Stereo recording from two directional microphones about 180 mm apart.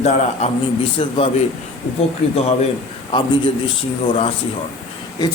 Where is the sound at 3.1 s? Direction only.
25° left (ahead or behind).